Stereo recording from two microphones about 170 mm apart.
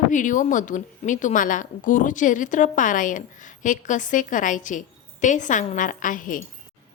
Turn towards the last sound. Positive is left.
turn(degrees=50)  # may be behind; listen again after turning